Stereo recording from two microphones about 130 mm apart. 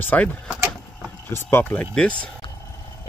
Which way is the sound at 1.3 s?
15° left (ahead or behind).